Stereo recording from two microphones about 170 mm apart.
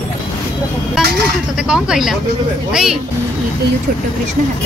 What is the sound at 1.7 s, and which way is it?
Speech, 5° right (ahead or behind).